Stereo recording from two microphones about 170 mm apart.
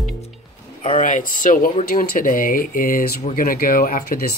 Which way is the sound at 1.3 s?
50° left (ahead or behind).